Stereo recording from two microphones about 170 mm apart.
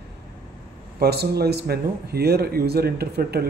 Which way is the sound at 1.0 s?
70° right (ahead or behind).